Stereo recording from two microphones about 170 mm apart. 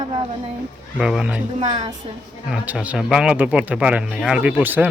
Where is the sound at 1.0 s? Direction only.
5° right (ahead or behind).